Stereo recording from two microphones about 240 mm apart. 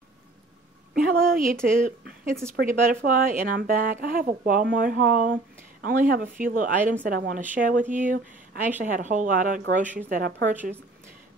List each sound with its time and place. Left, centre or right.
0.9 s a sound: right
1.3 s speech: right
10.5 s speech: centre